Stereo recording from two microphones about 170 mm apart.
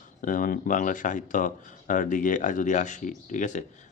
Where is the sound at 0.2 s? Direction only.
50° left (ahead or behind).